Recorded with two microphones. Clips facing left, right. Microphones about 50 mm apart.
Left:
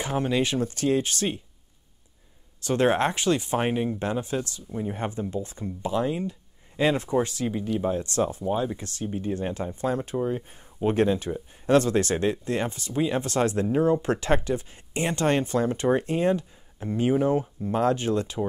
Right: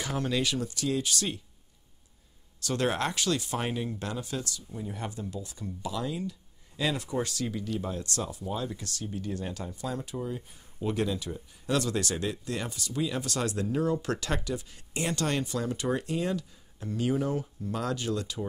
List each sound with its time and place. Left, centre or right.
0.0 s speech: left
2.6 s speech: left